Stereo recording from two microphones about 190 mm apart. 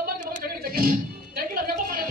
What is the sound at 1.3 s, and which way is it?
Music, 50° right (ahead or behind).